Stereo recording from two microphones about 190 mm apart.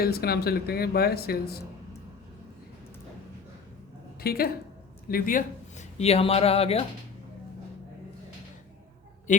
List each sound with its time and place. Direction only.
0.0 s speech: 55° left (ahead or behind)
4.2 s a woman's voice: 55° left (ahead or behind); by 6.8 s 30° left (ahead or behind)